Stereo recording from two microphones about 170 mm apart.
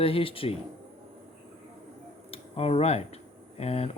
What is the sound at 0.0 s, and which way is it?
Speech, 35° left (ahead or behind).